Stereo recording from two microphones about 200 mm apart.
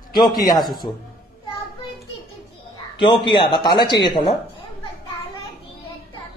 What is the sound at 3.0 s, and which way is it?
Speech, 25° left (ahead or behind).